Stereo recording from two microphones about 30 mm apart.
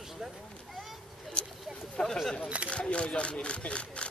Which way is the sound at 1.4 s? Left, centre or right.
Left.